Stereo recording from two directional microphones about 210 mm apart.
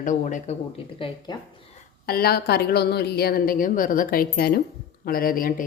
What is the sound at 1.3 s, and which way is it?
Speech, 20° left (ahead or behind).